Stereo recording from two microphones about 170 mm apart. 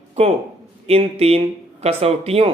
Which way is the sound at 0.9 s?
35° right (ahead or behind).